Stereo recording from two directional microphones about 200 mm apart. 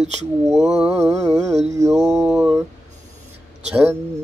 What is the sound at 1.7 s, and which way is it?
Mantra, 15° right (ahead or behind).